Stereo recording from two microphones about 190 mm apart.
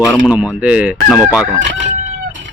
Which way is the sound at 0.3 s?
5° right (ahead or behind).